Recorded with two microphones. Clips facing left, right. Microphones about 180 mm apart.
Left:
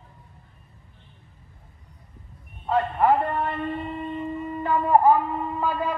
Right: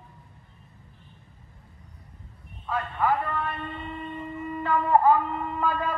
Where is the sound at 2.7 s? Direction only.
60° left (ahead or behind); by 4.1 s 45° left (ahead or behind).